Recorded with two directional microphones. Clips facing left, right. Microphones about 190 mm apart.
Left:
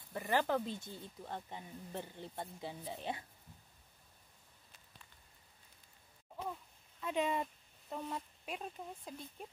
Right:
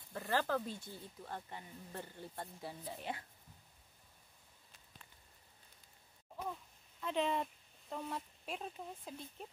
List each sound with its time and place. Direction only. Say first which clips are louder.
0.1 s speech: left 2 dB; 15° left (ahead or behind)
7.0 s speech: even; 5° left (ahead or behind)